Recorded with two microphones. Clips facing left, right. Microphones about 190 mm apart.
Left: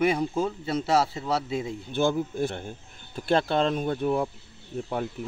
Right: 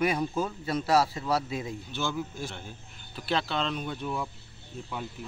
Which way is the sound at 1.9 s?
55° left (ahead or behind).